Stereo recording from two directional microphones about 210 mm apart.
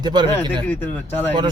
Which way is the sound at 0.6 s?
10° left (ahead or behind).